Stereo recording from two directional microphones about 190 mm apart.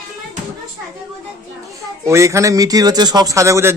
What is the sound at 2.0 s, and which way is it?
Speech, 15° right (ahead or behind).